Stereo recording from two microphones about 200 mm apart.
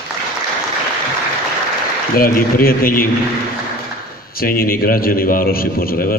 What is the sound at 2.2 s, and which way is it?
Speech, 45° left (ahead or behind).